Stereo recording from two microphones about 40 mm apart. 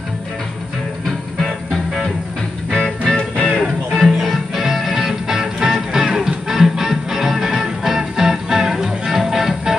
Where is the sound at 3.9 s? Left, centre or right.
Centre.